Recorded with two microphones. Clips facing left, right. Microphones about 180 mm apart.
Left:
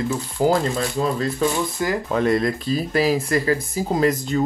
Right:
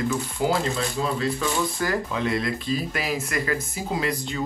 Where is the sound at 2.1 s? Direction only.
45° left (ahead or behind).